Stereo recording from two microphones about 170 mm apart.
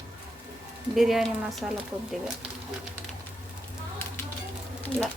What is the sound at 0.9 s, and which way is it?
Speech, centre (ahead or behind).